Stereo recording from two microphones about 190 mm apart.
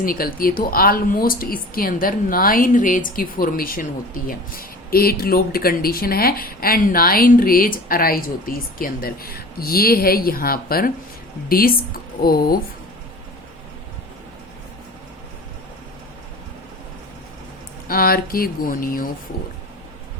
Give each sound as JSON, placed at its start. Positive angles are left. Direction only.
{"t": 0.0, "sound": "speech", "side_deg": 50}
{"t": 17.8, "sound": "speech", "side_deg": 50}